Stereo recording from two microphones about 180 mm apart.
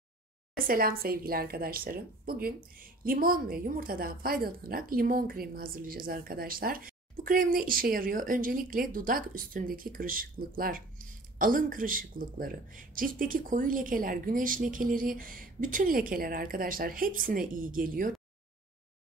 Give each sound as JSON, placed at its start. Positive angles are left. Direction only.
{"t": 0.7, "sound": "a woman's voice", "side_deg": -55}